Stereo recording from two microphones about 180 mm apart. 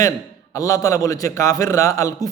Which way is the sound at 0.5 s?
20° left (ahead or behind).